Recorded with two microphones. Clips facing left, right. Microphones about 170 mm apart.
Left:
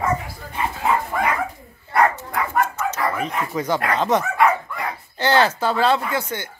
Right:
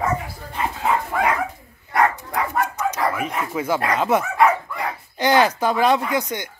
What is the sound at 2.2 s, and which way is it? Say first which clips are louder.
Dog: left 1 dB; 15° right (ahead or behind).